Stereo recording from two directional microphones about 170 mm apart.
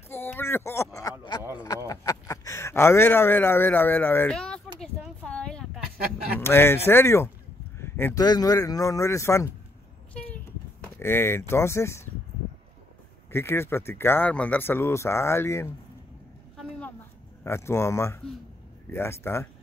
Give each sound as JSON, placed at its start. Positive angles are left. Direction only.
{"t": 0.1, "sound": "a sound", "side_deg": 15}
{"t": 1.9, "sound": "speech", "side_deg": 20}
{"t": 4.7, "sound": "a sound", "side_deg": 5}
{"t": 6.4, "sound": "speech", "side_deg": 15}
{"t": 11.0, "sound": "speech", "side_deg": 15}
{"t": 13.3, "sound": "speech", "side_deg": 15}
{"t": 17.4, "sound": "speech", "side_deg": 15}